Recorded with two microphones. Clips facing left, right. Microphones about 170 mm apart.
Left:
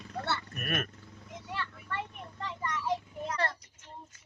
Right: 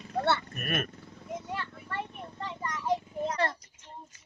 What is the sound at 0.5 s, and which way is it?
Speech, centre (ahead or behind).